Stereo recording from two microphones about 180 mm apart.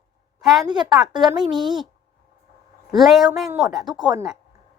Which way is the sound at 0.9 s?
Centre (ahead or behind).